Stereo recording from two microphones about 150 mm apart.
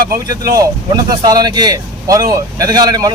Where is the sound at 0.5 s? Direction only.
25° right (ahead or behind).